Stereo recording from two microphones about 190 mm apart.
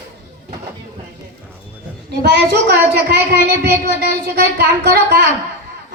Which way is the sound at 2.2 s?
65° right (ahead or behind).